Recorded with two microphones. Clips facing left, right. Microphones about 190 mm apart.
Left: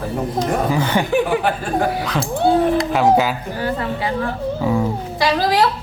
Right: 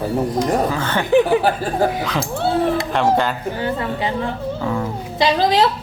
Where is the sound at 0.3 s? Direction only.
15° left (ahead or behind).